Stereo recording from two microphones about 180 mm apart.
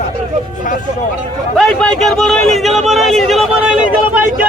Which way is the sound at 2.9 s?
Centre (ahead or behind).